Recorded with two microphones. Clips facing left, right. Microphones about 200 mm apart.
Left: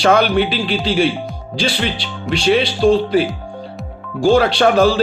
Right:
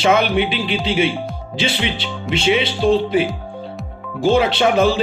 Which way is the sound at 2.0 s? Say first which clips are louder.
Left 1 dB; 20° right (ahead or behind).